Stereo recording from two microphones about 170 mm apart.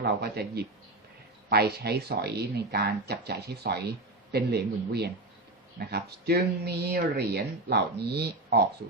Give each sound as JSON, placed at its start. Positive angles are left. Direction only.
{"t": 0.0, "sound": "speech", "side_deg": -70}